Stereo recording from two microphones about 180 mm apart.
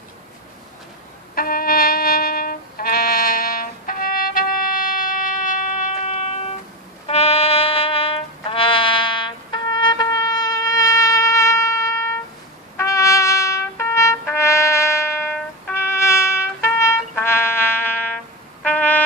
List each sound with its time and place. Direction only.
1.3 s music: 55° left (ahead or behind); by 12.2 s 15° left (ahead or behind)
12.7 s trumpet: 15° left (ahead or behind)